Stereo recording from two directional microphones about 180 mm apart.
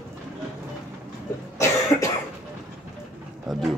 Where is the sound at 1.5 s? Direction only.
15° left (ahead or behind).